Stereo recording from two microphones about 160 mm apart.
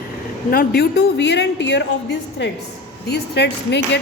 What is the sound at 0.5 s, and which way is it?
A woman's voice, 80° left.